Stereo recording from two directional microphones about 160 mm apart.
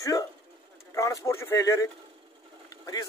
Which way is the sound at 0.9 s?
20° left (ahead or behind).